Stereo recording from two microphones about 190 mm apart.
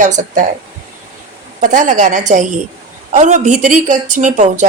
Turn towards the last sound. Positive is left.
turn(degrees=-40)  # may be behind; listen again after turning